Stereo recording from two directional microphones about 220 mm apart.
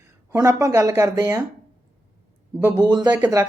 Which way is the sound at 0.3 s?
15° right (ahead or behind).